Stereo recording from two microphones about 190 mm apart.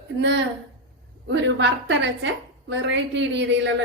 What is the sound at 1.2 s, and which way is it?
A woman's voice, 65° right (ahead or behind).